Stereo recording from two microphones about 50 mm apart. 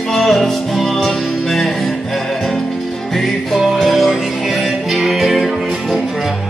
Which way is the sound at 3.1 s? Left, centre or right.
Centre.